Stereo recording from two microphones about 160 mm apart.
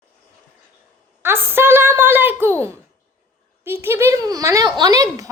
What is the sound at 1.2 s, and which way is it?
A woman's voice, 15° right (ahead or behind).